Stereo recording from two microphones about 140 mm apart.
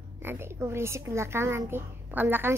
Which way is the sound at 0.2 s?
15° right (ahead or behind).